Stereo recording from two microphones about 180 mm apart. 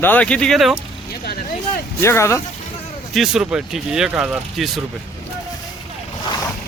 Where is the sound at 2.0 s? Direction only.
15° left (ahead or behind).